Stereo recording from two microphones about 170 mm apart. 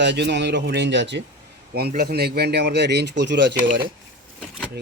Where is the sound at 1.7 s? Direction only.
65° right (ahead or behind); by 3.5 s 90° right.